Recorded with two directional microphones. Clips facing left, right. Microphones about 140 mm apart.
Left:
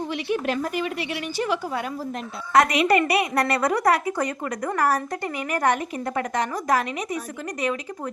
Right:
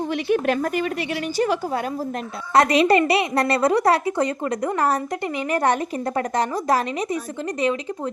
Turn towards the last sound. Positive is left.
turn(degrees=-30)  # may be behind; listen again after turning